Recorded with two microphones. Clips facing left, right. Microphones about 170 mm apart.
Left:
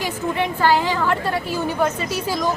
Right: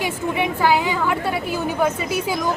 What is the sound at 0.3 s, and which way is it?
A woman's voice, 5° right (ahead or behind).